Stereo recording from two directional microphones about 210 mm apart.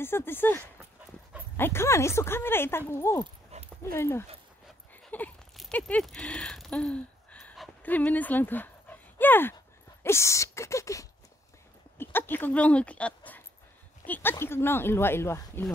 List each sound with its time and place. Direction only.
0.0 s speech: 10° left (ahead or behind)
1.6 s speech: 10° left (ahead or behind)